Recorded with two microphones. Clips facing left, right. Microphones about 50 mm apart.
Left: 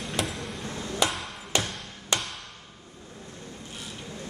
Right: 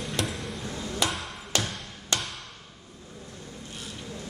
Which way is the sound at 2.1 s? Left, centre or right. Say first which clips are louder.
Left 1 dB; centre.